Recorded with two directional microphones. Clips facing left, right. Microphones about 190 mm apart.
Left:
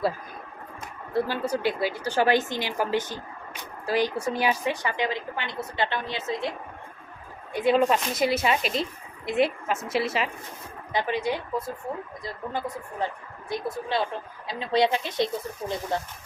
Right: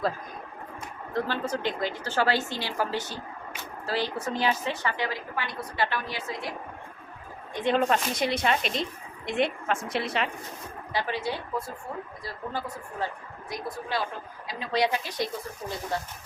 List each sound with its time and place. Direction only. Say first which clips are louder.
1.1 s a woman's voice: left 3 dB; 10° left (ahead or behind)
7.5 s speech: left 3 dB; 5° left (ahead or behind)
10.9 s a woman's voice: left 4 dB; 15° left (ahead or behind)